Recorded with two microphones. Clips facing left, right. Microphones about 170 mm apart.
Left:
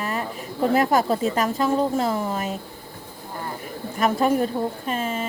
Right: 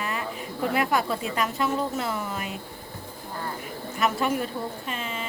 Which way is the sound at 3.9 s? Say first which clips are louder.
Left 5 dB; 45° left (ahead or behind).